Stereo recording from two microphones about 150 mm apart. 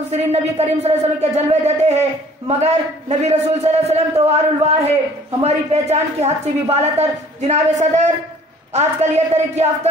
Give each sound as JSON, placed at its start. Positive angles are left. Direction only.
{"t": 0.1, "sound": "a man's voice", "side_deg": -45}